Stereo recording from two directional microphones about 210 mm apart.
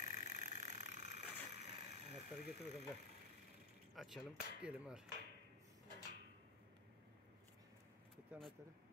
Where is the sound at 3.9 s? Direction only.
Centre (ahead or behind).